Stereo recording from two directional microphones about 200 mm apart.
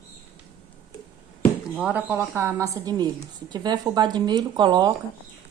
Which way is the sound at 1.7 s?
5° right (ahead or behind).